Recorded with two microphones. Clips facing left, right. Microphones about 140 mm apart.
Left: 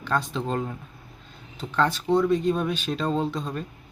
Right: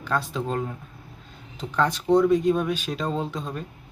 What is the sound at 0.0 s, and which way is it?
Speech, 10° right (ahead or behind).